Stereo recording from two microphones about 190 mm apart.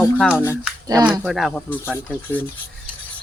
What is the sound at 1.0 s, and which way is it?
Speech, 5° right (ahead or behind).